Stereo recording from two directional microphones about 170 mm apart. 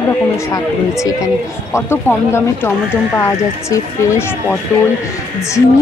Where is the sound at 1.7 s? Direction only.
15° left (ahead or behind).